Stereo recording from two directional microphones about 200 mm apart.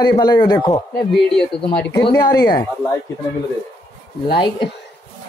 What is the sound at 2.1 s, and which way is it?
Speech, 20° left (ahead or behind).